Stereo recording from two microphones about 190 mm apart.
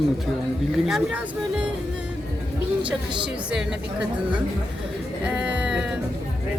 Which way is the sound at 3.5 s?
5° right (ahead or behind).